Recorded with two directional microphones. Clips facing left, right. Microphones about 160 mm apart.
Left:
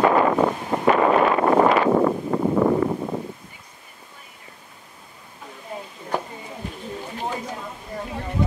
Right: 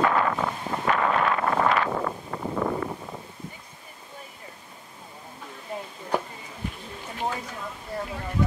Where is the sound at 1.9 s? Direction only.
35° left (ahead or behind).